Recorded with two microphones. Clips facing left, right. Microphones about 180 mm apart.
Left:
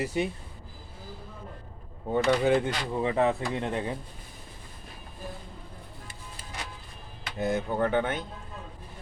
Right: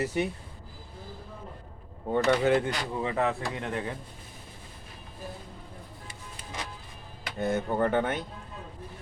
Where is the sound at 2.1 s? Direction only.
15° left (ahead or behind).